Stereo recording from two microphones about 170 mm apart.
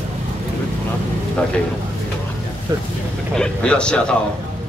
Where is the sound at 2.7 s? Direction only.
20° right (ahead or behind).